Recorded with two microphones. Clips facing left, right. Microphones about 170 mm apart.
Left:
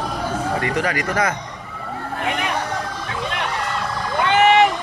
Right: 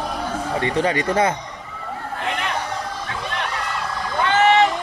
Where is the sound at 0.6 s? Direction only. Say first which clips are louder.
Right 2 dB; 30° right (ahead or behind).